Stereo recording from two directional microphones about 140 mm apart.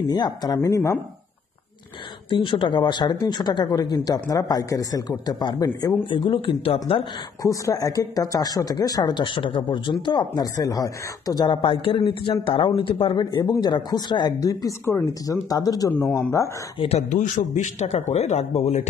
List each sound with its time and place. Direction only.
0.1 s speech: 30° left (ahead or behind)
2.2 s speech: 35° left (ahead or behind)
7.4 s speech: 25° left (ahead or behind)
17.1 s a man's voice: 60° left (ahead or behind)